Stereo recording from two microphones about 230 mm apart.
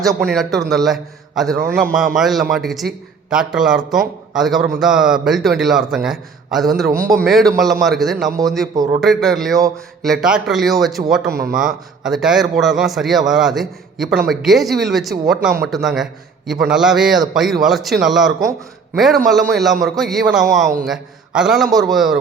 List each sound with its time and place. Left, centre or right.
0.0 s a man's voice: centre
11.3 s speech: right
11.5 s a man's voice: centre